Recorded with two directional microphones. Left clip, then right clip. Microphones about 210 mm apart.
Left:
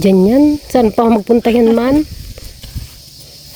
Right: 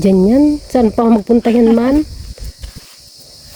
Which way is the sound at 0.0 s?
Centre (ahead or behind).